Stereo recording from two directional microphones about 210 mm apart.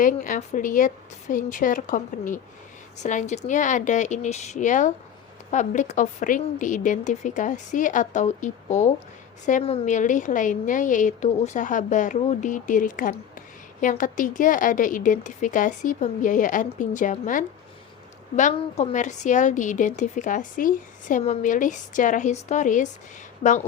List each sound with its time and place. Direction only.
0.0 s a woman's voice: 40° left (ahead or behind)